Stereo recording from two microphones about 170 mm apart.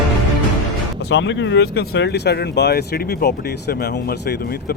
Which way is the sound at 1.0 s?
90° left.